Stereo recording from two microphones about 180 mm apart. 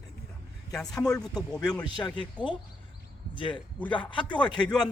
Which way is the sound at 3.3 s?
25° left (ahead or behind).